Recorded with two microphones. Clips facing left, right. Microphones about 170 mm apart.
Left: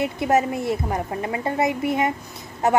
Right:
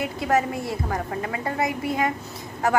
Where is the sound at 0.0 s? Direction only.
20° left (ahead or behind).